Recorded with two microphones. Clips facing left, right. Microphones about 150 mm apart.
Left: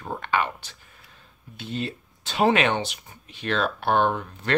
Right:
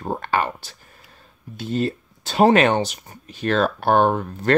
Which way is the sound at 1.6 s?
40° right (ahead or behind).